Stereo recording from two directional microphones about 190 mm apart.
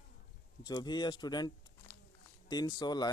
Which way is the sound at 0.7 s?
20° left (ahead or behind).